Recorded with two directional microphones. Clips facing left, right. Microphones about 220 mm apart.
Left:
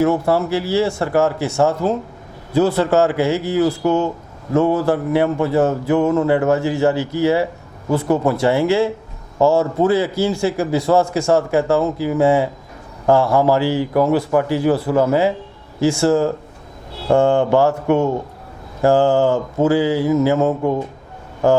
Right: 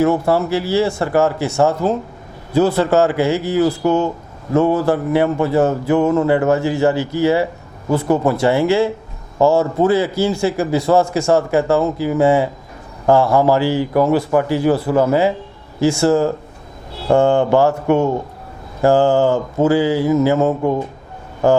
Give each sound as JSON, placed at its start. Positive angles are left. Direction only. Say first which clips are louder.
{"t": 0.0, "sound": "a man's voice", "louder": "right 1 dB", "side_deg": -30}
{"t": 3.7, "sound": "a man's voice", "louder": "right 1 dB", "side_deg": -30}
{"t": 7.9, "sound": "a man's voice", "louder": "right 1 dB", "side_deg": -30}